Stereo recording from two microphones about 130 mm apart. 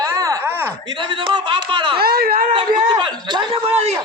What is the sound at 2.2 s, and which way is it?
Speech, 90° right.